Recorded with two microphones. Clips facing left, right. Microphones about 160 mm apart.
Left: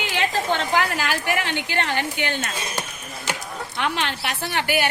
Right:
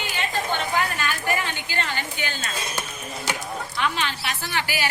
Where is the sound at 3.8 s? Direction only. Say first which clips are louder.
Left 2 dB; 60° left (ahead or behind).